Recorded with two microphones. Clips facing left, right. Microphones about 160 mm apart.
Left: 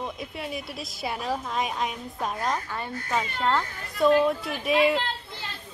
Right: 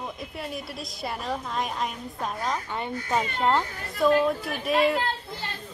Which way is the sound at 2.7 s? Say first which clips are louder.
Right 2 dB; 20° right (ahead or behind).